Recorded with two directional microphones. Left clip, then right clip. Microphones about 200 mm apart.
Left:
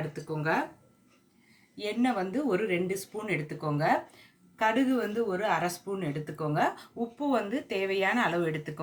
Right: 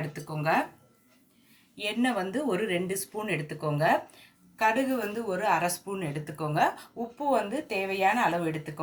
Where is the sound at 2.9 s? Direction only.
10° right (ahead or behind).